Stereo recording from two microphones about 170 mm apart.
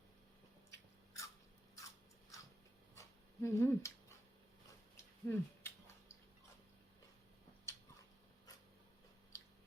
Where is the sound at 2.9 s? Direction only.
15° left (ahead or behind).